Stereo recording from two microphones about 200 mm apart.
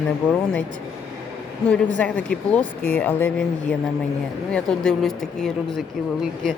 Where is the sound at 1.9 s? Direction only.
5° left (ahead or behind).